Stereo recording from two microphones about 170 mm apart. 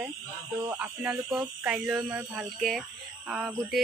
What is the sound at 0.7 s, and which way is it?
Speech, 10° right (ahead or behind).